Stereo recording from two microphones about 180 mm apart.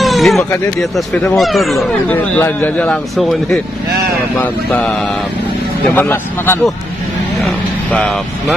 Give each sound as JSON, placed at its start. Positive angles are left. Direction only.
{"t": 0.0, "sound": "a sound", "side_deg": 0}
{"t": 0.9, "sound": "a man's voice", "side_deg": 0}
{"t": 5.9, "sound": "a man's voice", "side_deg": 10}
{"t": 7.9, "sound": "a man's voice", "side_deg": 5}